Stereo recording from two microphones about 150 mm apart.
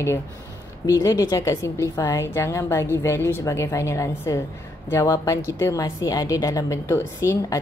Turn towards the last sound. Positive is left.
turn(degrees=20)  # may be behind; listen again after turning